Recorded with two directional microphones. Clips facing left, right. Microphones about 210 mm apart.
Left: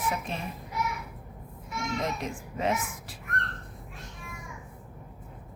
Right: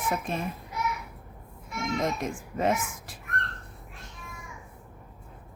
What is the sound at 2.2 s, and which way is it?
Speech, 45° right (ahead or behind).